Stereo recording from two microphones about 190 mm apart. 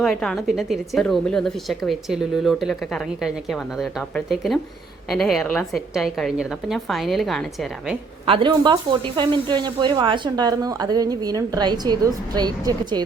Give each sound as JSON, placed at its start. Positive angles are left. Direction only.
{"t": 0.0, "sound": "speech", "side_deg": 5}
{"t": 8.3, "sound": "speech", "side_deg": -25}